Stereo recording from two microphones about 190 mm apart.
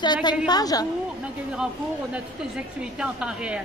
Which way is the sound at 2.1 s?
5° right (ahead or behind).